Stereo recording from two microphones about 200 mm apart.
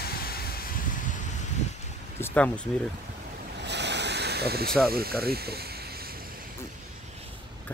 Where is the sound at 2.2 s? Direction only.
5° left (ahead or behind).